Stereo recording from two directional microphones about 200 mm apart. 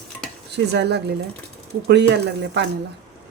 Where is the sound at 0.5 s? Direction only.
55° right (ahead or behind).